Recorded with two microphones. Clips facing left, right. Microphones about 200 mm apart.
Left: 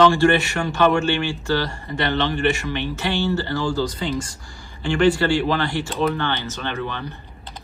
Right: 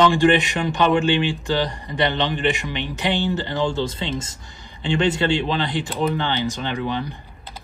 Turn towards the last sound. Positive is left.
turn(degrees=-15)  # may be behind; listen again after turning